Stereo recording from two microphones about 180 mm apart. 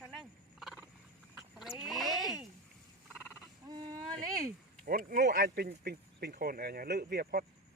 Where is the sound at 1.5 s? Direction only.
Centre (ahead or behind).